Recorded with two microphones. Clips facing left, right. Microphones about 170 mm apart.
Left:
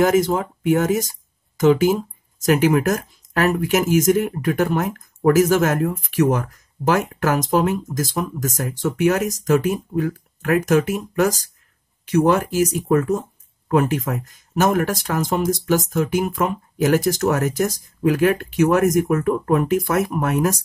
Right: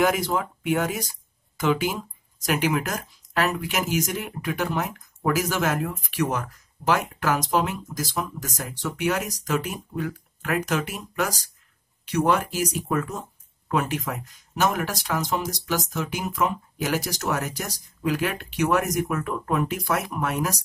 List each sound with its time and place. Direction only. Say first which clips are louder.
0.0 s speech: left 6 dB; 45° left (ahead or behind)